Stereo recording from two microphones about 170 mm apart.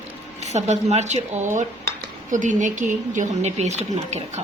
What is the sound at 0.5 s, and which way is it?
A woman's voice, 40° right (ahead or behind).